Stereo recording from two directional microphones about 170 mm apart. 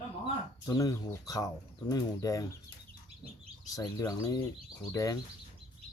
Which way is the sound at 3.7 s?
20° left (ahead or behind).